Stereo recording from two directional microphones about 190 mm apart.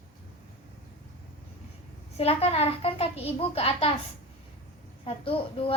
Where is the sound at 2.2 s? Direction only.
30° left (ahead or behind).